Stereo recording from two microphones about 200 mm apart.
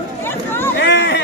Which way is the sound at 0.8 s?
55° left (ahead or behind).